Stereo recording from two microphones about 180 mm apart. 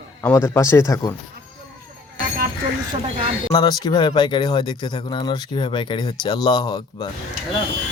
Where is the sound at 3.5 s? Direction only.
25° left (ahead or behind).